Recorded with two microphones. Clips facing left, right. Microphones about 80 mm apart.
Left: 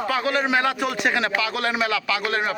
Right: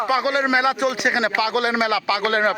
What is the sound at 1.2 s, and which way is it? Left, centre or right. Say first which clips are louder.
A man's voice: right 4 dB; right.